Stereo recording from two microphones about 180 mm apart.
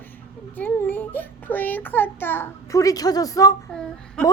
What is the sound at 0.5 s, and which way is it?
A child's voice, 10° left (ahead or behind).